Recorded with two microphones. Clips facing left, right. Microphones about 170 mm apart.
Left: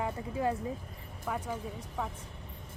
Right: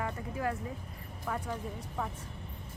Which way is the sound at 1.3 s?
10° left (ahead or behind).